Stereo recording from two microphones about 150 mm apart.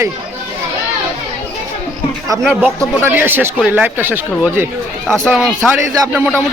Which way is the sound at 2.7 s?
15° right (ahead or behind).